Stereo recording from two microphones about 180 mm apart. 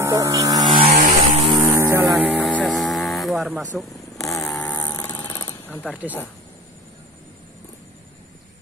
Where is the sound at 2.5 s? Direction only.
5° left (ahead or behind).